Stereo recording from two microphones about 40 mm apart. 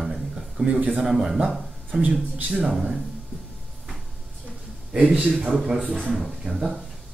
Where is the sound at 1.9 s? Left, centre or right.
Right.